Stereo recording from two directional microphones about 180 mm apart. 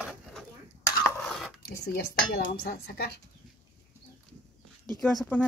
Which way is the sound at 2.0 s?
60° left (ahead or behind).